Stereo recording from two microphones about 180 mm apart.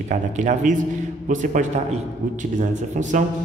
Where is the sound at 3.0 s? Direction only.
45° right (ahead or behind).